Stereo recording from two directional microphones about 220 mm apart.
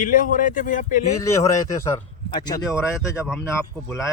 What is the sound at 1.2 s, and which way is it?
A man's voice, 15° left (ahead or behind).